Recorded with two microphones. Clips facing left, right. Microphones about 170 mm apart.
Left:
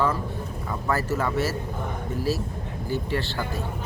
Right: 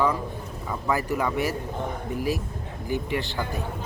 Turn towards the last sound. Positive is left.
turn(degrees=-15)  # may be behind; listen again after turning